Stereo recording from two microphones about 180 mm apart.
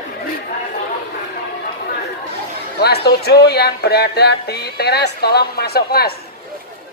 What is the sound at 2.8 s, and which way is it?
Speech, 65° left (ahead or behind).